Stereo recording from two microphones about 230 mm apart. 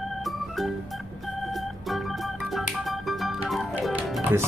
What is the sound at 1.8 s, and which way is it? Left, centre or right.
Music, centre.